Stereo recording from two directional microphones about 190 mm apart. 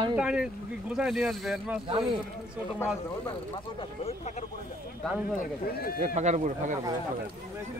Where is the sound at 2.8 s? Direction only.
25° left (ahead or behind).